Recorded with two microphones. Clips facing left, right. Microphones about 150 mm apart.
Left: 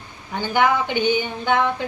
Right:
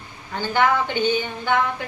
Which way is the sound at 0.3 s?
15° left (ahead or behind).